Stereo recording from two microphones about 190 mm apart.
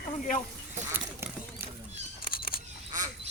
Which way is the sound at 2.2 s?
50° left (ahead or behind).